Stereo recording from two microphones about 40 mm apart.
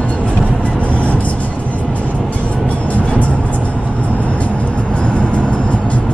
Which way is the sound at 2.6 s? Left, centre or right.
Left.